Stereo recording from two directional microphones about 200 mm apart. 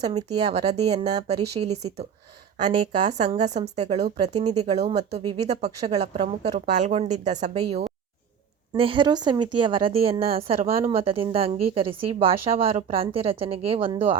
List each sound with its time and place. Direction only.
0.1 s speech: 30° right (ahead or behind)
7.5 s a woman's voice: 20° right (ahead or behind)